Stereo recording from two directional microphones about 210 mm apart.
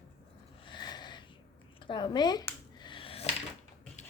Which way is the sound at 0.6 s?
20° left (ahead or behind).